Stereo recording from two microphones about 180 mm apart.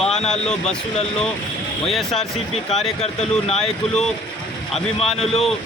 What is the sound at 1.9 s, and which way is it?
Speech, centre (ahead or behind).